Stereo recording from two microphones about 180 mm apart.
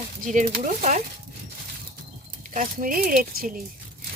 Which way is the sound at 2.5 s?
50° right (ahead or behind).